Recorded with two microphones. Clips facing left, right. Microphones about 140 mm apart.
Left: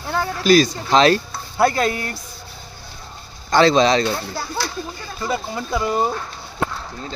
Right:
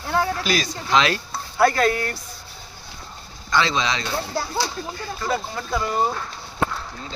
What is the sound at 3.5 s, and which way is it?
Speech, 40° left (ahead or behind).